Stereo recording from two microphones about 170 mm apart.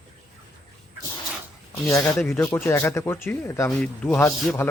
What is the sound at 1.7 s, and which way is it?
Speech, 15° left (ahead or behind).